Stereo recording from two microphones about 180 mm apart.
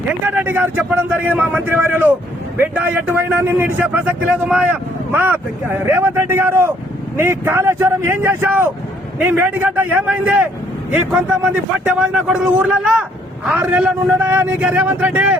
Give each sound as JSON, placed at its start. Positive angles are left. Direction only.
{"t": 0.3, "sound": "a man's voice", "side_deg": -10}
{"t": 11.9, "sound": "a man's voice", "side_deg": -5}